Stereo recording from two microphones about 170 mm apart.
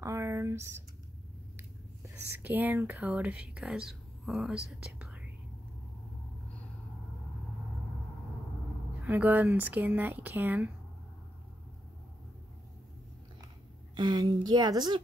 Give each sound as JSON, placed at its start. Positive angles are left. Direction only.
{"t": 0.0, "sound": "a sound", "side_deg": -15}
{"t": 2.4, "sound": "speech", "side_deg": -10}
{"t": 9.0, "sound": "speech", "side_deg": -10}
{"t": 13.9, "sound": "speech", "side_deg": -25}